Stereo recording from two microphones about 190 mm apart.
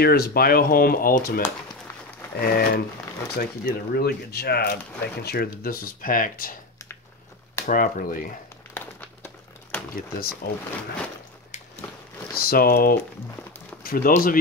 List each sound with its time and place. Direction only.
0.0 s speech: 55° left (ahead or behind)
2.4 s speech: 55° left (ahead or behind)
7.6 s speech: 45° left (ahead or behind)
8.7 s crumpling: 10° left (ahead or behind)
9.9 s speech: 50° left (ahead or behind)
12.4 s speech: 50° left (ahead or behind)